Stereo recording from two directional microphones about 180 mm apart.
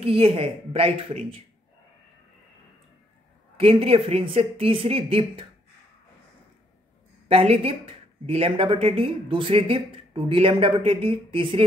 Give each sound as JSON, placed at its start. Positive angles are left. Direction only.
{"t": 0.0, "sound": "speech", "side_deg": -30}
{"t": 3.5, "sound": "speech", "side_deg": -30}
{"t": 7.2, "sound": "speech", "side_deg": -35}